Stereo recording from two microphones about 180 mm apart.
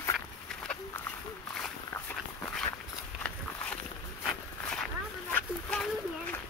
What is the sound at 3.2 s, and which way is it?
Walk, 5° left (ahead or behind).